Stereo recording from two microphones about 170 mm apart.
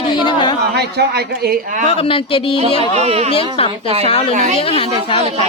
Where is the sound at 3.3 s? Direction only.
35° left (ahead or behind).